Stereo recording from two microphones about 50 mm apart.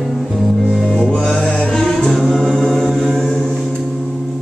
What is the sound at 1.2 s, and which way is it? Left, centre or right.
Music, centre.